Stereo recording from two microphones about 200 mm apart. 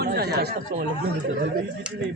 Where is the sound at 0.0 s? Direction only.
55° right (ahead or behind).